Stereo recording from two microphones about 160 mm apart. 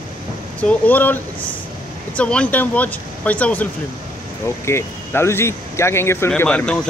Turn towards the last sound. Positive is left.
turn(degrees=5)  # may be behind; listen again after turning